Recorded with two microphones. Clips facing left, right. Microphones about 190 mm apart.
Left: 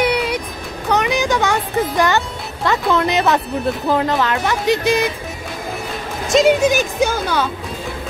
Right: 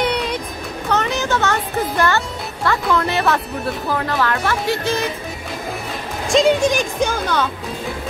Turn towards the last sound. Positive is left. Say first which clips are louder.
# left 2 dB
turn(degrees=10)  # may be behind; listen again after turning